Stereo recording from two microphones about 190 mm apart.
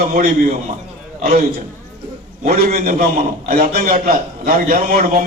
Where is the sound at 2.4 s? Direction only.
45° right (ahead or behind).